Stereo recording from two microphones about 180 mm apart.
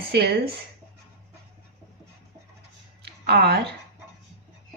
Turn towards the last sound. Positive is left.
turn(degrees=-60)  # may be behind; listen again after turning